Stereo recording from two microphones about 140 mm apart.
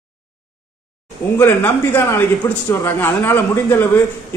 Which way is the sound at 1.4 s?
15° left (ahead or behind).